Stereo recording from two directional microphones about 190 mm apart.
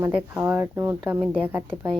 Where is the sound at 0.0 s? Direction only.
10° right (ahead or behind).